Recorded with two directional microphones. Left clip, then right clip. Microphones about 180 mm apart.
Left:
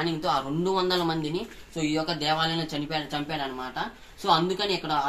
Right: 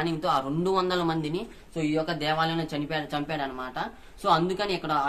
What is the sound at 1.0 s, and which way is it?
Speech, 5° right (ahead or behind).